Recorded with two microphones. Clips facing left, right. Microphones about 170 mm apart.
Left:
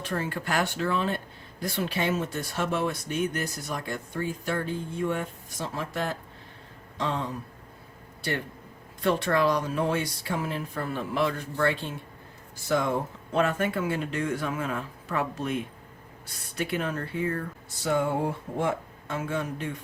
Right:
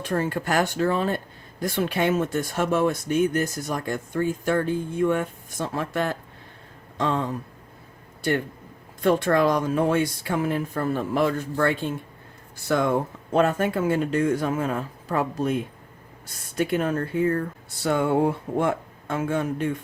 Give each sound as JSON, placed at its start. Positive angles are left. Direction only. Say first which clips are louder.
{"t": 0.0, "sound": "speech", "louder": "right 6 dB", "side_deg": -45}
{"t": 6.9, "sound": "a sound", "louder": "right 5 dB", "side_deg": -50}
{"t": 9.0, "sound": "speech", "louder": "right 4 dB", "side_deg": -50}
{"t": 13.3, "sound": "a man's voice", "louder": "right 4 dB", "side_deg": -40}
{"t": 17.8, "sound": "speech", "louder": "right 5 dB", "side_deg": -65}